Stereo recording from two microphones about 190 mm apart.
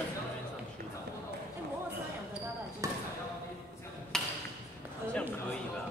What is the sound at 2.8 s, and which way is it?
Basketball bounce, 15° right (ahead or behind).